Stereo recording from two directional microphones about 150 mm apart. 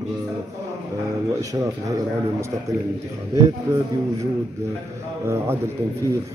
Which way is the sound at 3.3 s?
20° right (ahead or behind).